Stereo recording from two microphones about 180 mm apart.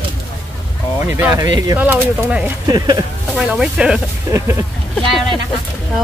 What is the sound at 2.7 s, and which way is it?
Speech, 20° right (ahead or behind).